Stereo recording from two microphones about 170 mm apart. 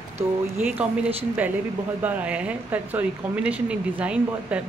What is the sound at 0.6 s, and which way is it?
Speech, 10° right (ahead or behind).